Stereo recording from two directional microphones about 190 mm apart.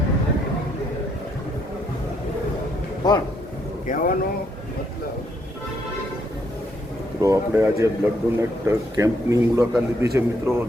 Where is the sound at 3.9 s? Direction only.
45° left (ahead or behind).